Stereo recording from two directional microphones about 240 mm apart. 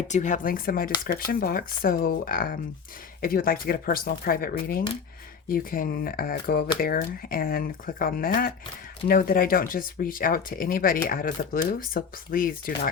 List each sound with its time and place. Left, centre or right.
0.1 s speech: left